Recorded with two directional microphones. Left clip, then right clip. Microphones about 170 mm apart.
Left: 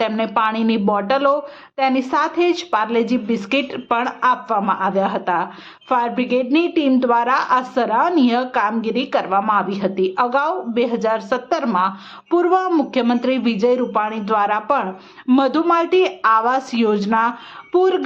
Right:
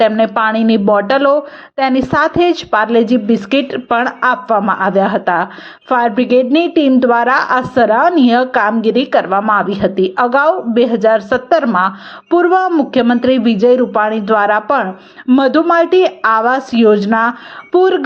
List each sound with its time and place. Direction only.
0.0 s a woman's voice: 25° right (ahead or behind)